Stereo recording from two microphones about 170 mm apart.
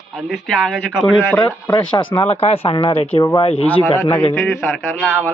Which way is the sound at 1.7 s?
30° left (ahead or behind).